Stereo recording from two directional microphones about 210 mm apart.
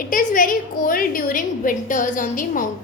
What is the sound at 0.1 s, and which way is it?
A woman's voice, 40° left (ahead or behind).